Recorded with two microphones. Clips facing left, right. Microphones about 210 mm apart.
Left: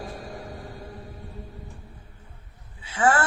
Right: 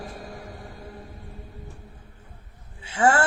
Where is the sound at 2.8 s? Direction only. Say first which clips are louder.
Right 1 dB; 25° right (ahead or behind).